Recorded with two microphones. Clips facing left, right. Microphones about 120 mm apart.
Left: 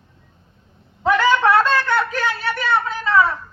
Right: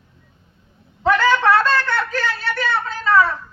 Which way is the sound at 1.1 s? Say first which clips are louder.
Even; 15° left (ahead or behind).